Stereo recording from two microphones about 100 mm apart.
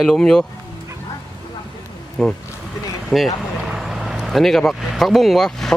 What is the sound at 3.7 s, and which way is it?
Vehicle, 5° right (ahead or behind).